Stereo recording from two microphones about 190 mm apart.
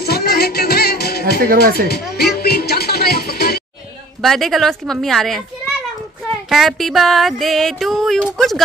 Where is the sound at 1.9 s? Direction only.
55° left (ahead or behind).